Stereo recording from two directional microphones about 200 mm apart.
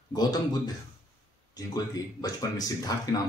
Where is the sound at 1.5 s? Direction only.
20° left (ahead or behind).